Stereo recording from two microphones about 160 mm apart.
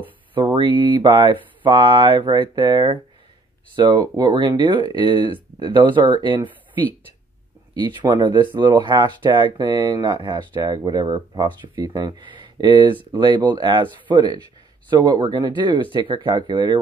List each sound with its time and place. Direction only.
0.3 s speech: 30° right (ahead or behind)
7.7 s speech: 25° right (ahead or behind)